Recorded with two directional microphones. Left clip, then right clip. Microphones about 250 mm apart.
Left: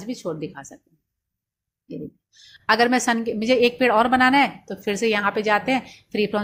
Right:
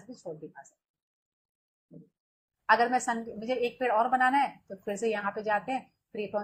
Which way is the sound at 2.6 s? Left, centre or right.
Left.